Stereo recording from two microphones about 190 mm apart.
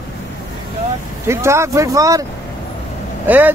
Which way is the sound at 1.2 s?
15° right (ahead or behind).